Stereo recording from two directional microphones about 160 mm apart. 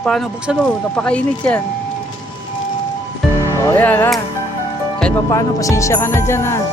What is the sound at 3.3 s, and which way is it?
Speech, 20° left (ahead or behind).